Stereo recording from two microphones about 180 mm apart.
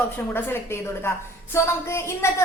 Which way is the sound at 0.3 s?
10° left (ahead or behind).